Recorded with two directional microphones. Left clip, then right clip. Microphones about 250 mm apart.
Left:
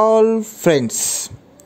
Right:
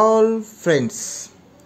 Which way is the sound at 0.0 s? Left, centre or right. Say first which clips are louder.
Left 2 dB; left.